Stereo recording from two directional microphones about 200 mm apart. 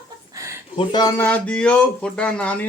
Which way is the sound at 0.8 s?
20° left (ahead or behind).